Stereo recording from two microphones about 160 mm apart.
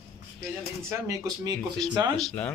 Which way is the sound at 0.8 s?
20° right (ahead or behind).